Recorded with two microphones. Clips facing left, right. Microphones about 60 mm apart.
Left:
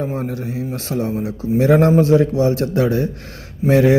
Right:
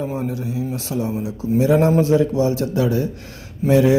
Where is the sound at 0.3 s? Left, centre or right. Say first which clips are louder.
Even; left.